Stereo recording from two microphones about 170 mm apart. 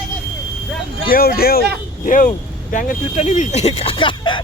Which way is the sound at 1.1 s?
60° left (ahead or behind).